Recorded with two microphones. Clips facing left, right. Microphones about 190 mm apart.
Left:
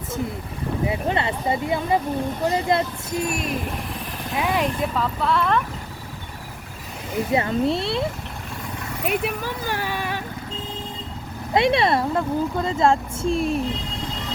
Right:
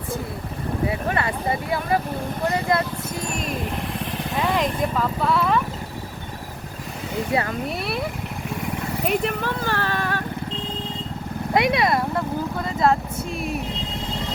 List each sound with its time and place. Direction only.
0.9 s speech: 20° left (ahead or behind)
4.4 s speech: 10° left (ahead or behind)
7.3 s speech: 25° left (ahead or behind)
9.0 s speech: 10° left (ahead or behind)
11.5 s speech: 25° left (ahead or behind)